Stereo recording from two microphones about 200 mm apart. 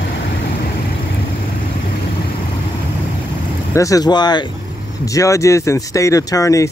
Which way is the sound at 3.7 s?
15° left (ahead or behind).